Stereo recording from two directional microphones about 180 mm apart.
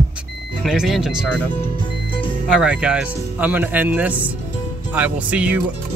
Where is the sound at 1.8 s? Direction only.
30° left (ahead or behind).